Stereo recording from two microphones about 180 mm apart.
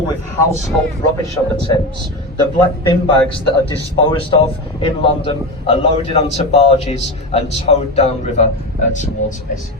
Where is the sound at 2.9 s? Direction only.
30° left (ahead or behind).